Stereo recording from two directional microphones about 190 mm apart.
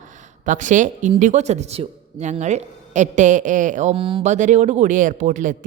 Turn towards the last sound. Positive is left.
turn(degrees=-40)  # may be behind; listen again after turning